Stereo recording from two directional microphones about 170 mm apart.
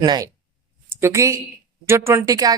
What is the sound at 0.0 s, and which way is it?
Speech, 25° right (ahead or behind).